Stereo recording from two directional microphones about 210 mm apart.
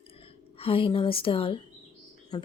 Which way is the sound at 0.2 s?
25° left (ahead or behind).